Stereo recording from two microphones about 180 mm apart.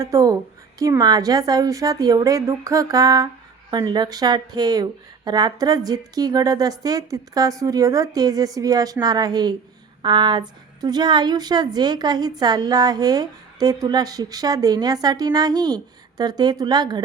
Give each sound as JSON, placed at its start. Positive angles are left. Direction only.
{"t": 0.0, "sound": "speech", "side_deg": -20}